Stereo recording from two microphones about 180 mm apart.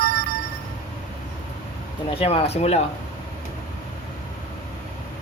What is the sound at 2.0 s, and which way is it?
Speech, 35° left (ahead or behind).